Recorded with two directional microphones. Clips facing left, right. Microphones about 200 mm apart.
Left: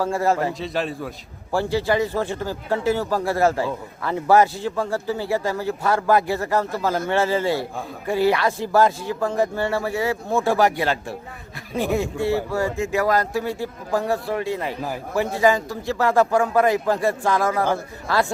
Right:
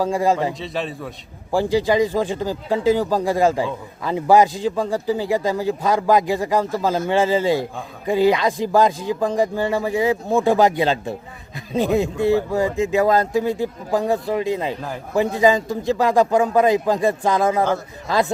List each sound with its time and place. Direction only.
0.0 s a man's voice: 15° right (ahead or behind)
0.6 s a man's voice: centre (ahead or behind)
1.5 s a man's voice: 15° right (ahead or behind)